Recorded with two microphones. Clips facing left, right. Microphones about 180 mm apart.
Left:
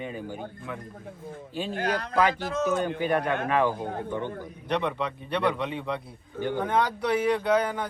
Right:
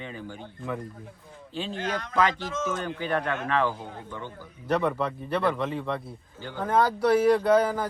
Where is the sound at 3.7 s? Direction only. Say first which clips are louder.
Left 7 dB; 55° left (ahead or behind).